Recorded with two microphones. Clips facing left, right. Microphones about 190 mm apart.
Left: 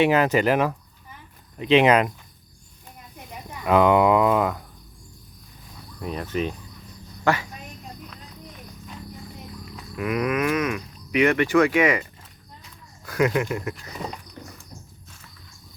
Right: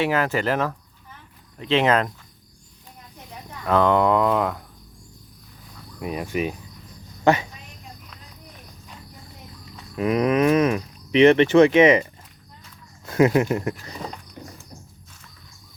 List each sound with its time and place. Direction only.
0.0 s speech: 20° left (ahead or behind)
3.5 s speech: 10° left (ahead or behind)
6.0 s speech: 10° right (ahead or behind)
10.0 s speech: 30° right (ahead or behind)
13.1 s speech: 25° right (ahead or behind)